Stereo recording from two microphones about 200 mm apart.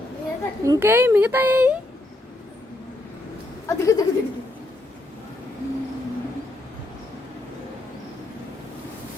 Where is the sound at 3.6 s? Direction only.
15° left (ahead or behind).